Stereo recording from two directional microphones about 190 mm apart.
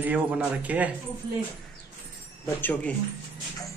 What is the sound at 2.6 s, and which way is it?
Speech, 10° left (ahead or behind).